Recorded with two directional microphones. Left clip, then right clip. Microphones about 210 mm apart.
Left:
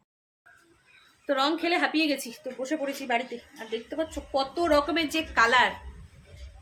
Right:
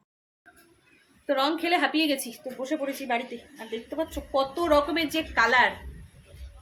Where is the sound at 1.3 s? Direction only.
Centre (ahead or behind).